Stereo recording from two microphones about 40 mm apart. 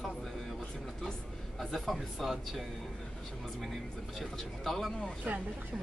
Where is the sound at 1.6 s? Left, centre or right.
Centre.